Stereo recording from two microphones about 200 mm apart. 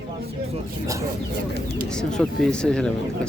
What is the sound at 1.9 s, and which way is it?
Speech, 5° left (ahead or behind).